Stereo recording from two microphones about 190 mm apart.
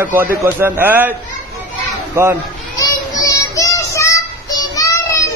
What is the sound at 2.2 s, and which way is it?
Speech, 10° right (ahead or behind).